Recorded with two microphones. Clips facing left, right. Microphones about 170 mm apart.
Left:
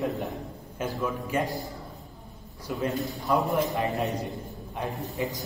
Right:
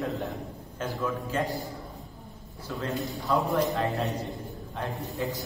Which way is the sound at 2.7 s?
20° left (ahead or behind).